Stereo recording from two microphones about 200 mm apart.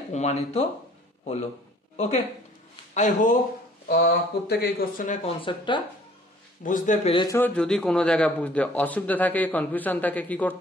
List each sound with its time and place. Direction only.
0.1 s speech: 35° left (ahead or behind)
2.9 s speech: 35° left (ahead or behind)
3.8 s speech: 55° left (ahead or behind); by 5.3 s 40° left (ahead or behind)
5.4 s speech: 25° left (ahead or behind)
6.6 s speech: 40° left (ahead or behind)
7.2 s a man's voice: 15° left (ahead or behind)